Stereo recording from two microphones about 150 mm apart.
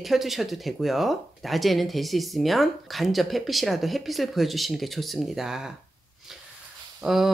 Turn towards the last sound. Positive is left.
turn(degrees=0)  # may be behind; listen again after turning